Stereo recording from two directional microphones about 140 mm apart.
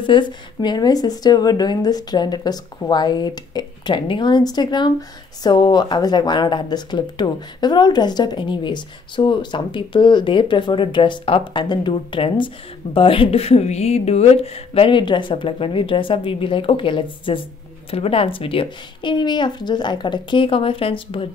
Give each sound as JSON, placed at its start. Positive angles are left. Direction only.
{"t": 0.0, "sound": "a woman's voice", "side_deg": 35}